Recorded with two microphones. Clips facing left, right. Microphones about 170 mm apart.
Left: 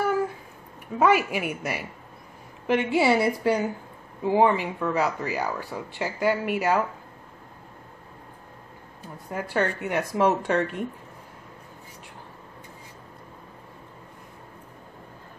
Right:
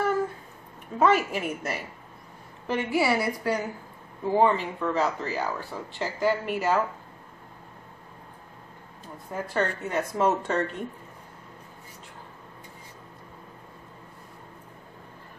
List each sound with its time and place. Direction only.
0.9 s speech: 10° left (ahead or behind)
2.6 s a woman's voice: 20° left (ahead or behind)
4.2 s speech: 15° left (ahead or behind)
9.3 s speech: 10° left (ahead or behind)